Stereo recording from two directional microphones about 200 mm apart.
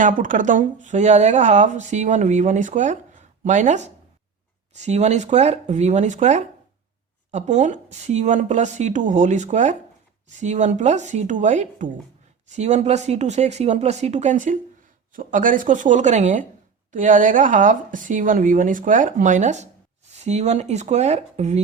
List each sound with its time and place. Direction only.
0.0 s speech: 40° right (ahead or behind)